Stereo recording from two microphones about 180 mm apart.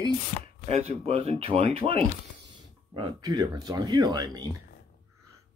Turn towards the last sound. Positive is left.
turn(degrees=-20)  # may be behind; listen again after turning